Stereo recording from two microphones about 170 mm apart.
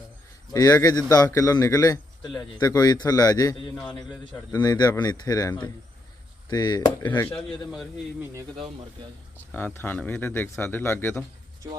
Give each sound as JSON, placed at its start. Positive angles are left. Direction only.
{"t": 0.5, "sound": "a man's voice", "side_deg": 20}
{"t": 7.1, "sound": "speech", "side_deg": 10}
{"t": 7.4, "sound": "a man's voice", "side_deg": 0}
{"t": 9.5, "sound": "speech", "side_deg": 10}